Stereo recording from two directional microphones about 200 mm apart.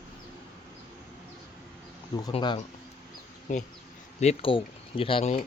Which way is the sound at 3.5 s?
40° left (ahead or behind).